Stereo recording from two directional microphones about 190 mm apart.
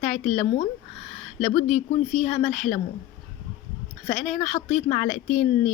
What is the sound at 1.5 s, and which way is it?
Speech, 35° left (ahead or behind).